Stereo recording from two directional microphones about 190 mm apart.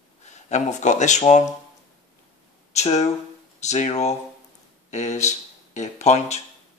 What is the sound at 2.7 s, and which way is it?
Speech, 35° left (ahead or behind).